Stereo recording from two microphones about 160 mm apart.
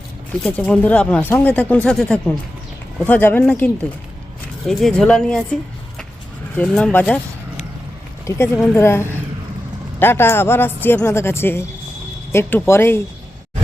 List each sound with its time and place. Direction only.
0.4 s a man's voice: 5° left (ahead or behind)
6.6 s a man's voice: 5° left (ahead or behind)
8.3 s a man's voice: 15° left (ahead or behind)